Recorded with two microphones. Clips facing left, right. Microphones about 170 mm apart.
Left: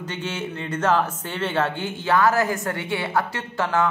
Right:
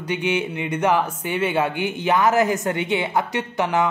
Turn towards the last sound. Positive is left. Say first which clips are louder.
# right 2 dB
turn(degrees=-15)  # may be behind; listen again after turning